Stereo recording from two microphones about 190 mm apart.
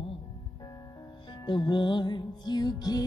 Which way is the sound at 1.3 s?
25° left (ahead or behind).